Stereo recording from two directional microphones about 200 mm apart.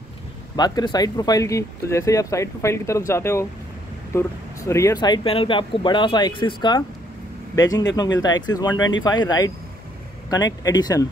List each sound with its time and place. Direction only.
0.6 s speech: 20° left (ahead or behind)